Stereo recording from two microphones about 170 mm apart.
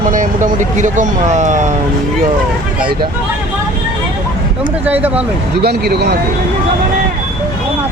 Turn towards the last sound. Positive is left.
turn(degrees=-70)  # may be behind; listen again after turning